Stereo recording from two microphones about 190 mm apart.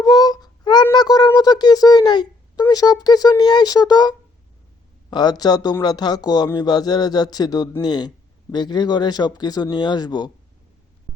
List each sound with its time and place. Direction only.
0.0 s child singing: 20° left (ahead or behind)
5.1 s speech: 20° left (ahead or behind)